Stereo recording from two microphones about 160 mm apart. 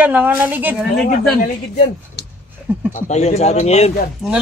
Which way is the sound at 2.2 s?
90° left.